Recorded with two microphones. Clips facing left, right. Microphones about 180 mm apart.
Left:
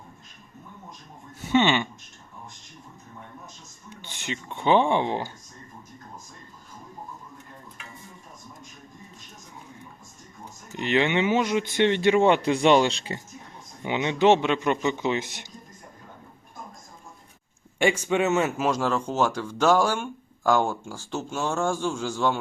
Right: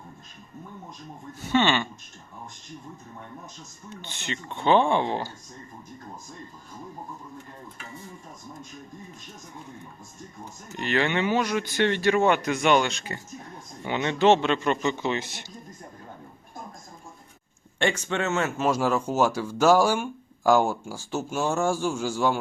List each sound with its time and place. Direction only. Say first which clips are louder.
1.5 s a sound: left 1 dB; 15° left (ahead or behind)
3.8 s a man's voice: even; 10° left (ahead or behind)
10.8 s speech: left 2 dB; 20° left (ahead or behind)
13.8 s a man's voice: even; 15° left (ahead or behind)
17.7 s a man's voice: left 4 dB; 10° left (ahead or behind)
18.6 s speech: right 1 dB; 10° right (ahead or behind)